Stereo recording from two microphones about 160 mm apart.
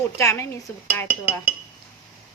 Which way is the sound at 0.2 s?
15° left (ahead or behind).